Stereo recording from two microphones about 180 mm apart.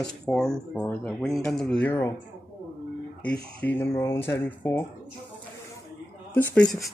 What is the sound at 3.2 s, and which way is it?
Speech, 10° left (ahead or behind).